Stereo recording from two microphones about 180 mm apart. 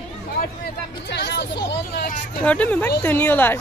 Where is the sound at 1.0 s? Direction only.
65° left (ahead or behind).